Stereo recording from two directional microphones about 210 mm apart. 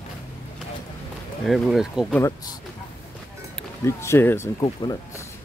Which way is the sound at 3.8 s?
10° left (ahead or behind).